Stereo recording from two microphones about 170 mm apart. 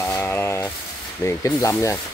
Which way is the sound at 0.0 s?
10° left (ahead or behind).